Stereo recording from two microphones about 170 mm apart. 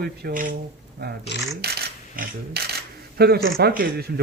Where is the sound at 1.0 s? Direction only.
70° right (ahead or behind).